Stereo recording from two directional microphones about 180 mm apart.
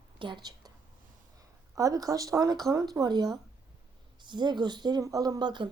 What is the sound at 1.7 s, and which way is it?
Speech, 20° right (ahead or behind).